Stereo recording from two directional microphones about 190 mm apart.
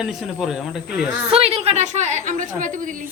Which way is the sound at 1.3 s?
30° right (ahead or behind).